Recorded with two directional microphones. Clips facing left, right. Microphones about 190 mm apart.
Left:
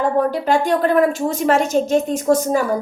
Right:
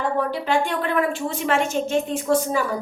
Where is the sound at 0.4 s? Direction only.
40° left (ahead or behind).